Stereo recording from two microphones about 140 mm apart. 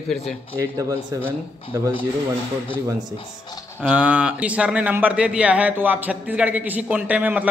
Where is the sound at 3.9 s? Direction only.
10° right (ahead or behind).